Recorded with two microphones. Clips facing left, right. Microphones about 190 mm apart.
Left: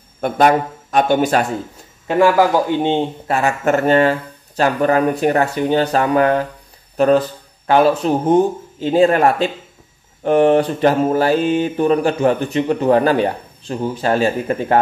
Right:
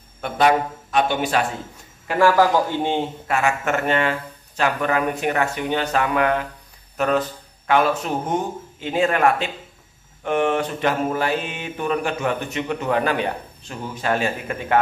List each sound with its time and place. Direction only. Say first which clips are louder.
0.2 s a man's voice: left 4 dB; 45° left (ahead or behind)
2.0 s speech: left 3 dB; 15° left (ahead or behind)
3.3 s a sound: left 5 dB; 35° left (ahead or behind)